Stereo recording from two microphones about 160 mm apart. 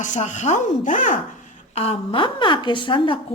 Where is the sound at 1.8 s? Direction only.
35° left (ahead or behind).